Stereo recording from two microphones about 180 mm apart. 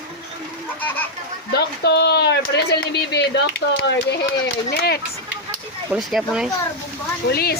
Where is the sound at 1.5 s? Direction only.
65° left (ahead or behind).